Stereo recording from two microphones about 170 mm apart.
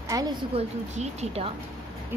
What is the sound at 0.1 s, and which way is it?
Speech, 20° right (ahead or behind).